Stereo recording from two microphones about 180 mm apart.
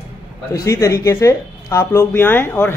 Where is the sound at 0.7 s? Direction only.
15° left (ahead or behind).